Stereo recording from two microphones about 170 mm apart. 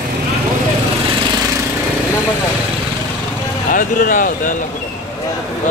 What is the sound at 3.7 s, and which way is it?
Speech, 55° left (ahead or behind).